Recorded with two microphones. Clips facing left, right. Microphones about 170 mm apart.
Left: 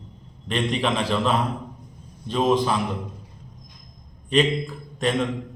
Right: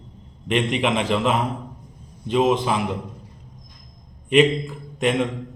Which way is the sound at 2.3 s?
15° right (ahead or behind).